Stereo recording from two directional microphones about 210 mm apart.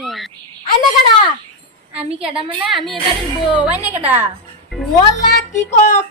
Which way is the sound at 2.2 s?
25° right (ahead or behind).